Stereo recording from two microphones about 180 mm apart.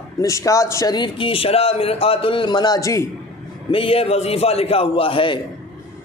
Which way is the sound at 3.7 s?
30° left (ahead or behind).